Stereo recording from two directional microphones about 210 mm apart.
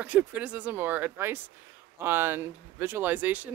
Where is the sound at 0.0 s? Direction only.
5° right (ahead or behind).